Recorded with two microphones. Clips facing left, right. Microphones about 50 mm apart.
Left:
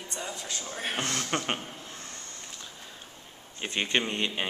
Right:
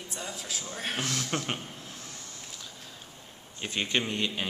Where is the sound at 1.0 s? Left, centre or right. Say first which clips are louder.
Left 2 dB; left.